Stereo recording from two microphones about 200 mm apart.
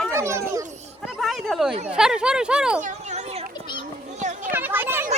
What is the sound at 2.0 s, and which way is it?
Speech, 5° right (ahead or behind).